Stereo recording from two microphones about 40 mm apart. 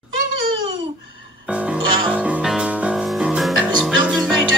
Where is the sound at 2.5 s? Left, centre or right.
Centre.